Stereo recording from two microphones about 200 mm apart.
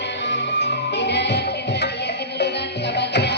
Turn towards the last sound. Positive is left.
turn(degrees=55)  # may be behind; listen again after turning